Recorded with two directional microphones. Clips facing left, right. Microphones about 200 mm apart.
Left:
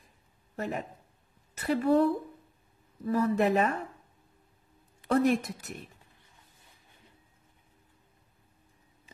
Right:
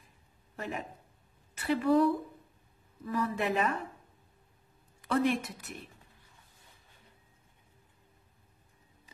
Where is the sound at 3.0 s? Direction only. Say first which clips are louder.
Left 6 dB; 40° left (ahead or behind).